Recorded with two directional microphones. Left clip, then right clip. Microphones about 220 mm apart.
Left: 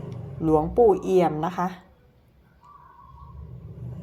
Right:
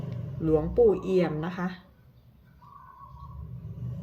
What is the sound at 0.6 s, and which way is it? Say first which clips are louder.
Speech: left 4 dB; centre (ahead or behind).